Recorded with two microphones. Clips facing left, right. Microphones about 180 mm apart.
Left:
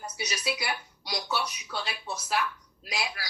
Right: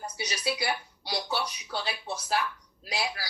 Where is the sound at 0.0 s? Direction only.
30° right (ahead or behind).